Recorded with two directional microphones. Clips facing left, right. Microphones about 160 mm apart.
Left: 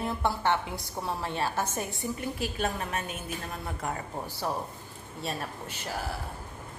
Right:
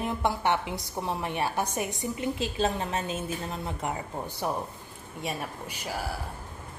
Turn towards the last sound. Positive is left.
turn(degrees=-10)  # may be behind; listen again after turning